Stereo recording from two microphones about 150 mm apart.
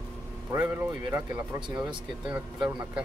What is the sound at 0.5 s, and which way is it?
Speech, 20° right (ahead or behind).